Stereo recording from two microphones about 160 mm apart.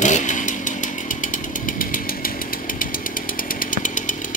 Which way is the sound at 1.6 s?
60° left (ahead or behind).